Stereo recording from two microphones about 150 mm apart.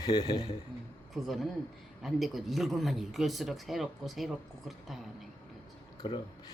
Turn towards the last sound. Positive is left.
turn(degrees=30)  # may be behind; listen again after turning